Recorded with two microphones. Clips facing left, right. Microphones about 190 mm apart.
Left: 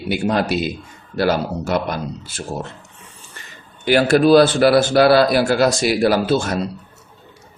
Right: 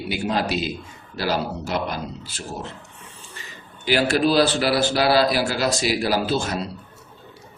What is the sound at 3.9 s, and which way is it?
Speech, 50° left (ahead or behind).